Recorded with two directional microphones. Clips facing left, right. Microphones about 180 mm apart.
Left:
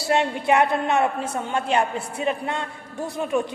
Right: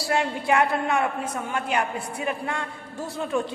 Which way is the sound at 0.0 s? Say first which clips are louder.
Left 3 dB; 25° left (ahead or behind).